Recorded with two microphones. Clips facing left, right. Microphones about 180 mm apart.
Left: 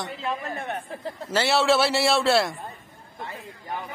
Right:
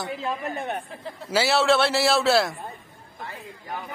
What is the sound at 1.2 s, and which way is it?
A man's voice, 5° right (ahead or behind).